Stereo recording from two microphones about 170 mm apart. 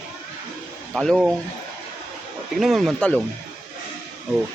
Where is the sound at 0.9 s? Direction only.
Centre (ahead or behind).